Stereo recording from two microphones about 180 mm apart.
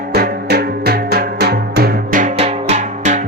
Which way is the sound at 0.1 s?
60° right (ahead or behind).